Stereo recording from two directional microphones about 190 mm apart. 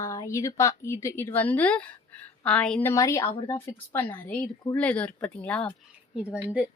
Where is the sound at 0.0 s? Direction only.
15° left (ahead or behind).